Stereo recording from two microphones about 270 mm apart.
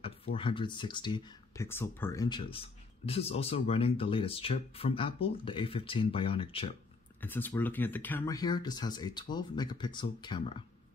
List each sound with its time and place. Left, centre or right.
0.0 s speech: centre
7.2 s speech: centre